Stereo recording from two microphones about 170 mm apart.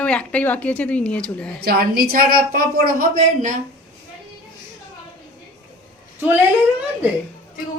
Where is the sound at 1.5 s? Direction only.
65° right (ahead or behind).